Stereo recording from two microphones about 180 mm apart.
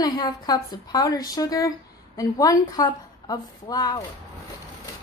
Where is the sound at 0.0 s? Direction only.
20° left (ahead or behind).